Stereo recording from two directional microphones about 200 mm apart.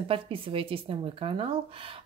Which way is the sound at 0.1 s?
25° right (ahead or behind).